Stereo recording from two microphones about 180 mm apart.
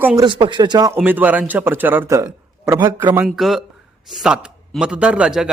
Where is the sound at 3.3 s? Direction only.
Centre (ahead or behind).